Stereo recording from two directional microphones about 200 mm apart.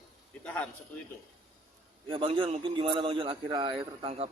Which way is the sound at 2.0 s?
25° right (ahead or behind).